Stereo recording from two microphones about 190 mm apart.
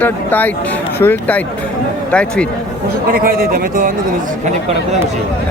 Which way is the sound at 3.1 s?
50° right (ahead or behind).